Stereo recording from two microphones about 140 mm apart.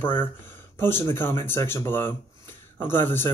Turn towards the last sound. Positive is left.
turn(degrees=15)  # may be behind; listen again after turning